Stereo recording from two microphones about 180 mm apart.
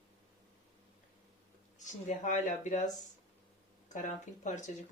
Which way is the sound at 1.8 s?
45° left (ahead or behind).